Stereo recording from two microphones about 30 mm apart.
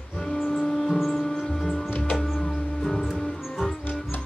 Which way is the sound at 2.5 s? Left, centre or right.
Centre.